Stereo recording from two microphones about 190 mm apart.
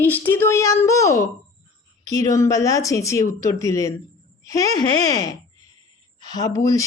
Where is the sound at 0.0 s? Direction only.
10° left (ahead or behind).